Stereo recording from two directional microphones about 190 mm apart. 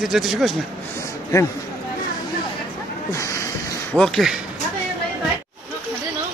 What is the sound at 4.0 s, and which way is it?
Speech, centre (ahead or behind).